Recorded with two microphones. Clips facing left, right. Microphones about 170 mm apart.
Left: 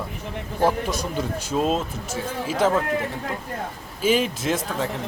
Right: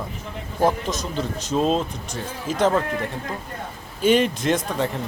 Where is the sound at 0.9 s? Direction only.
10° left (ahead or behind).